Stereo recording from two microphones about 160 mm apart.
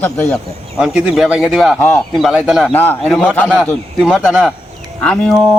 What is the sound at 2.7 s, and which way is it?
Speech, 10° left (ahead or behind).